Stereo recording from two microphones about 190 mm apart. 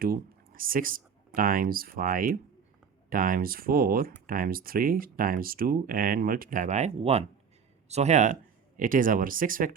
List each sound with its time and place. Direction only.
0.0 s speech: 50° right (ahead or behind)